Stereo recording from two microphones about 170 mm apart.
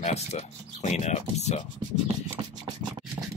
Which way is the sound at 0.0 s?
40° left (ahead or behind).